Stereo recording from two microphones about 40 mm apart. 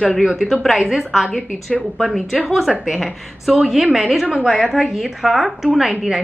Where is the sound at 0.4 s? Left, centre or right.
Centre.